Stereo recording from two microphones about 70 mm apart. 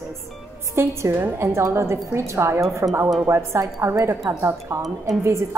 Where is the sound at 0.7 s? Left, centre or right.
Right.